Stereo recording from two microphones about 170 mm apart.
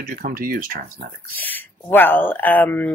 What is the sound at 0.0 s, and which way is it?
Speech, 55° right (ahead or behind).